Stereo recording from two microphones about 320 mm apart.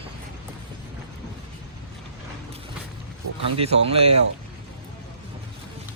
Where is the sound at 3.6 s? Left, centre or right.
Centre.